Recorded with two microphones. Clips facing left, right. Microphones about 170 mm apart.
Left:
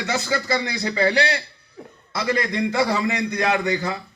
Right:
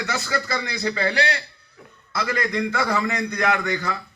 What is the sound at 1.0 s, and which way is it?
Speech, 35° left (ahead or behind).